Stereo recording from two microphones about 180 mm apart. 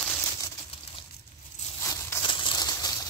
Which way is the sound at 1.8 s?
15° left (ahead or behind).